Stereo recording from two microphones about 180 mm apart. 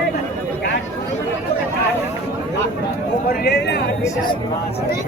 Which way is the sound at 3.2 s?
60° left (ahead or behind).